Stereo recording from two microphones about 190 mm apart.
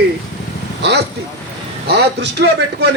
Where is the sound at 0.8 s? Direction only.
60° right (ahead or behind).